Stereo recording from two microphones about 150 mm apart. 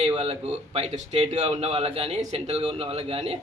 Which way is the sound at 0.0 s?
45° right (ahead or behind).